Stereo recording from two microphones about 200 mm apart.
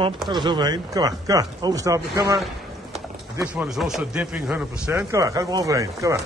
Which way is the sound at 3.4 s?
5° right (ahead or behind).